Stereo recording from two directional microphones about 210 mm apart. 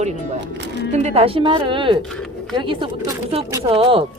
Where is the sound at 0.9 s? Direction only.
30° right (ahead or behind).